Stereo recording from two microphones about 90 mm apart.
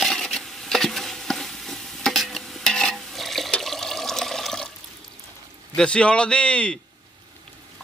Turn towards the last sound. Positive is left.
turn(degrees=10)  # may be behind; listen again after turning